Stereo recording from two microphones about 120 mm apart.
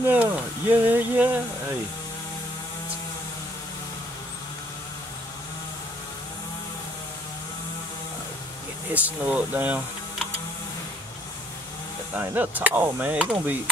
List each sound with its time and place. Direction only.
0.0 s speech: 15° right (ahead or behind)
8.9 s speech: 15° right (ahead or behind)
12.2 s speech: 15° right (ahead or behind)